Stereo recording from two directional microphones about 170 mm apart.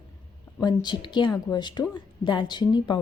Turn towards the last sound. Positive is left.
turn(degrees=25)  # may be behind; listen again after turning